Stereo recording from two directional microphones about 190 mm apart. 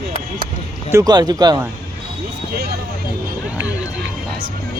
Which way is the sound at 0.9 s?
20° right (ahead or behind).